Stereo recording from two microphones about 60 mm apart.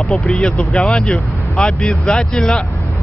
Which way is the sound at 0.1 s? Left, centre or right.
Centre.